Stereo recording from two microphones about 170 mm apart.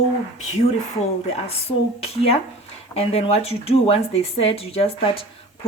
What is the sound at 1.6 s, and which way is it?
Speech, 35° left (ahead or behind).